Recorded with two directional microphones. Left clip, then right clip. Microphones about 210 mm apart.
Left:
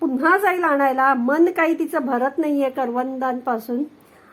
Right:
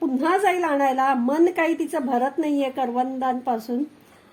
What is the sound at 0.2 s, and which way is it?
A woman's voice, centre (ahead or behind).